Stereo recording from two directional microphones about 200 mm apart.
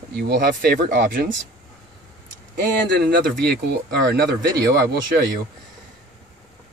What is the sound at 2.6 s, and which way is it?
Speech, 50° right (ahead or behind).